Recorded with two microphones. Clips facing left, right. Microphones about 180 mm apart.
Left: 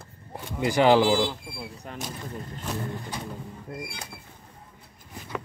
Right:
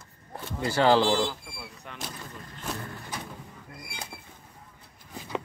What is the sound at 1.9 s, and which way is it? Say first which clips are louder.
Speech: left 6 dB; 40° left (ahead or behind).